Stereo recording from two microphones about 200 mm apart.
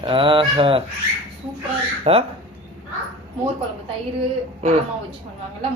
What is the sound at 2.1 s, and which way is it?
Speech, 30° right (ahead or behind).